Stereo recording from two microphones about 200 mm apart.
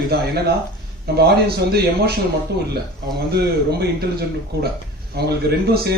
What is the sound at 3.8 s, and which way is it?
Speech, 55° right (ahead or behind).